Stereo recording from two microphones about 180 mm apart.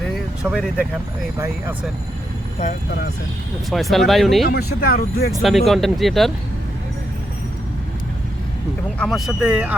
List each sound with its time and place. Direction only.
0.4 s speech: 10° right (ahead or behind)
3.7 s speech: centre (ahead or behind)
4.4 s speech: 60° left (ahead or behind)
5.4 s speech: centre (ahead or behind)
9.0 s speech: centre (ahead or behind)